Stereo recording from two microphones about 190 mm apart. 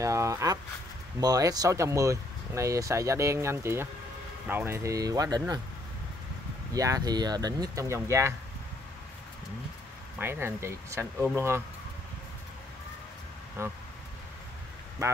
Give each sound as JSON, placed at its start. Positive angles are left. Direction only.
{"t": 0.0, "sound": "speech", "side_deg": -15}
{"t": 6.7, "sound": "speech", "side_deg": -20}
{"t": 10.1, "sound": "speech", "side_deg": -10}
{"t": 13.6, "sound": "speech", "side_deg": -15}
{"t": 15.0, "sound": "speech", "side_deg": -15}